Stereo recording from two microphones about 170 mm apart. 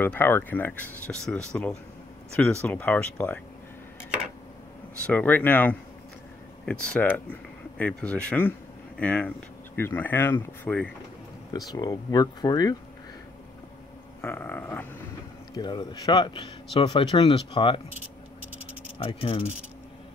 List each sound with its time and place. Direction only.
0.0 s speech: 10° left (ahead or behind)
5.0 s speech: 10° left (ahead or behind)
11.5 s speech: 25° left (ahead or behind)
14.2 s speech: 10° left (ahead or behind)
15.5 s speech: 25° left (ahead or behind)
18.9 s speech: 35° left (ahead or behind)